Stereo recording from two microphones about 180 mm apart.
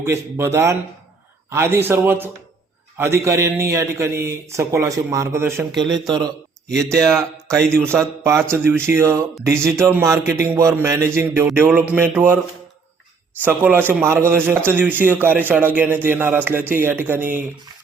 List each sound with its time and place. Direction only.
0.0 s a man's voice: 15° right (ahead or behind)
13.4 s a man's voice: 10° right (ahead or behind)